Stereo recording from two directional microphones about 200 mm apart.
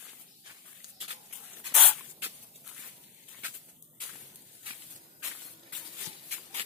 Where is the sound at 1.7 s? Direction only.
5° left (ahead or behind).